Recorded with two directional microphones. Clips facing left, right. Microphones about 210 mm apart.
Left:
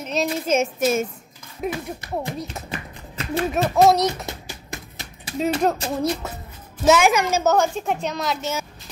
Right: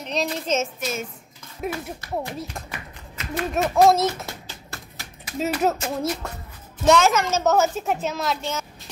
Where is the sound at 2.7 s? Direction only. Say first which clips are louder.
Left 6 dB; 30° left (ahead or behind).